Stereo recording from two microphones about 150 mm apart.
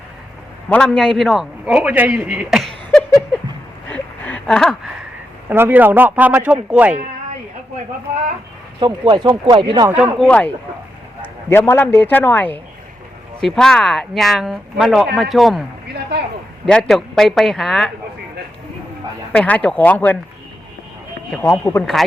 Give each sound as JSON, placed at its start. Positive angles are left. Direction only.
{"t": 0.7, "sound": "a man's voice", "side_deg": 5}
{"t": 3.8, "sound": "a sound", "side_deg": 10}
{"t": 5.5, "sound": "a man's voice", "side_deg": -15}
{"t": 8.8, "sound": "speech", "side_deg": -30}
{"t": 9.9, "sound": "speech", "side_deg": -5}
{"t": 10.2, "sound": "a man's voice", "side_deg": 10}
{"t": 16.6, "sound": "speech", "side_deg": 5}
{"t": 19.3, "sound": "speech", "side_deg": 10}
{"t": 21.6, "sound": "speech", "side_deg": 20}